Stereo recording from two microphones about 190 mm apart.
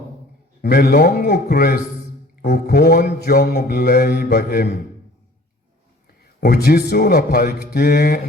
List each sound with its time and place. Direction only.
0.6 s speech: 50° left (ahead or behind)
2.4 s mantra: 55° left (ahead or behind)
6.4 s speech: 55° left (ahead or behind)